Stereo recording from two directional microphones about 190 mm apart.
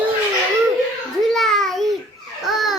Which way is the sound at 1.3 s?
Centre (ahead or behind).